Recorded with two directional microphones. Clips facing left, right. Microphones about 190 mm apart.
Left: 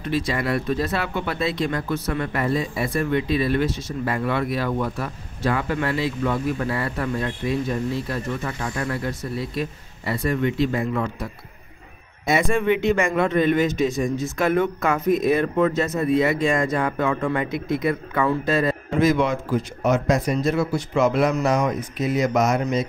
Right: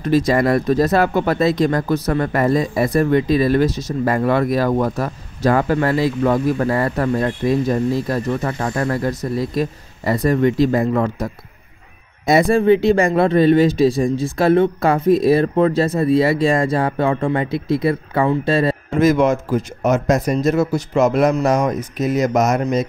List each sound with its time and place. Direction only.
0.0 s speech: 40° right (ahead or behind)
12.3 s speech: 35° right (ahead or behind)
18.9 s a man's voice: 45° right (ahead or behind)